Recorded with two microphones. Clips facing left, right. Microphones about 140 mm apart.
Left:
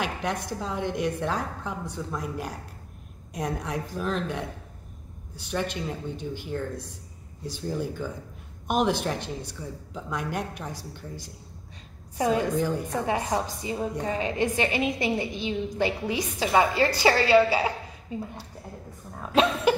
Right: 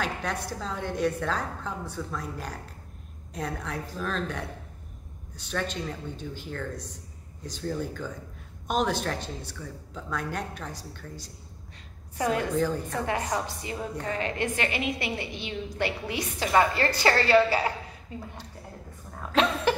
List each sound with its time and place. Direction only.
0.0 s a woman's voice: 15° left (ahead or behind)
12.2 s a woman's voice: 15° left (ahead or behind)